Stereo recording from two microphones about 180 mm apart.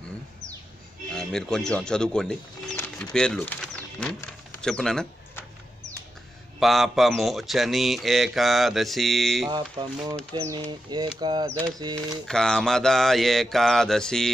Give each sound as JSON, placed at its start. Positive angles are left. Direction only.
{"t": 1.1, "sound": "speech", "side_deg": 5}
{"t": 6.6, "sound": "speech", "side_deg": 0}
{"t": 9.5, "sound": "bird", "side_deg": -25}
{"t": 11.9, "sound": "speech", "side_deg": 5}